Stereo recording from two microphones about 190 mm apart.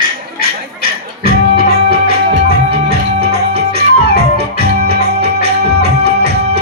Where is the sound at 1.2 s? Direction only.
55° right (ahead or behind).